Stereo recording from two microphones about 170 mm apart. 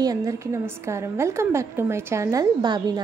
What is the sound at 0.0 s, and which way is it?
A woman's voice, 20° right (ahead or behind).